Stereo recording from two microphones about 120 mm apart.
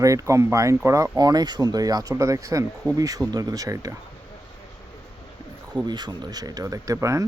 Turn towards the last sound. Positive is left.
turn(degrees=-25)  # may be behind; listen again after turning